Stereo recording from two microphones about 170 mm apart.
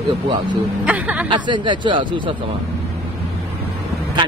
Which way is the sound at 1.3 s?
25° right (ahead or behind).